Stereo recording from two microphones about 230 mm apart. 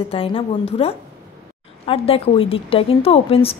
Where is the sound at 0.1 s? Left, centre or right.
Left.